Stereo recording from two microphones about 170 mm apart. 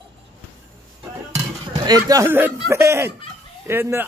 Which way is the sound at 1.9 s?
20° right (ahead or behind).